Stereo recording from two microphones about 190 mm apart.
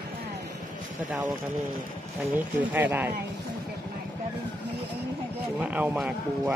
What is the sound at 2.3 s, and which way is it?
Speech, 10° right (ahead or behind).